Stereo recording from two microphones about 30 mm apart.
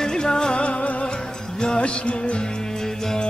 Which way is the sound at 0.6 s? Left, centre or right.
Left.